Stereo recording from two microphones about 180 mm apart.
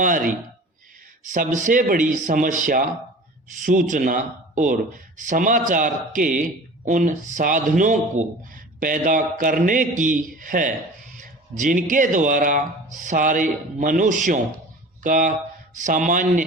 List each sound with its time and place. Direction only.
0.0 s speech: 50° right (ahead or behind)